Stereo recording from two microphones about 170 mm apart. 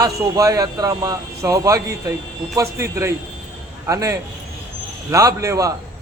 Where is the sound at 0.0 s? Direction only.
20° right (ahead or behind).